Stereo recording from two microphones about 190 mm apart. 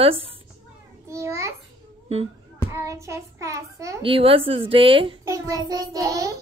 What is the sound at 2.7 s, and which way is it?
A child's voice, 15° right (ahead or behind).